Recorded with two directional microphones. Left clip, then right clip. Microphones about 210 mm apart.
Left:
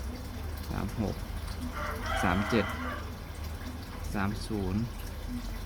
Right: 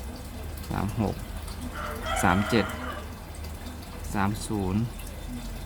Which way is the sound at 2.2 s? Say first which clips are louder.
Right 5 dB; 20° right (ahead or behind).